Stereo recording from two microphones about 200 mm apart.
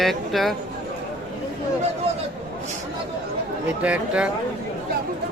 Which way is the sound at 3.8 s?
5° right (ahead or behind).